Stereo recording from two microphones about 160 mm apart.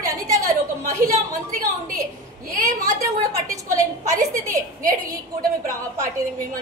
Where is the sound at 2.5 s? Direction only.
55° right (ahead or behind).